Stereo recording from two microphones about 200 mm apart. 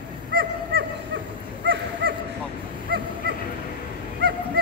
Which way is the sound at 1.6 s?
65° right (ahead or behind).